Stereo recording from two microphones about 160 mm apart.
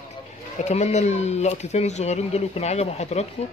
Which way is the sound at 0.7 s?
45° left (ahead or behind).